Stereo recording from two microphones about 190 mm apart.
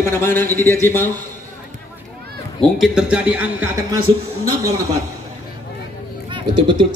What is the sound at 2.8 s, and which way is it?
Speech, 5° right (ahead or behind).